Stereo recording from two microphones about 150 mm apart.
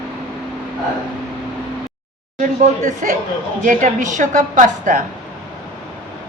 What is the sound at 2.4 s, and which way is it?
A woman's voice, 60° right (ahead or behind).